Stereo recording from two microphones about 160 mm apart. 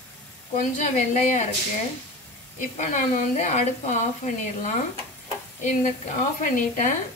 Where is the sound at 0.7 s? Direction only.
50° left (ahead or behind).